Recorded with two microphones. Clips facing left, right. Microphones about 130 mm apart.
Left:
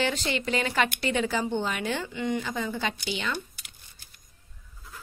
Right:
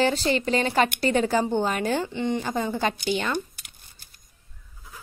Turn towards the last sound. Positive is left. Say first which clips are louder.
# right 6 dB
turn(degrees=-45)  # may be behind; listen again after turning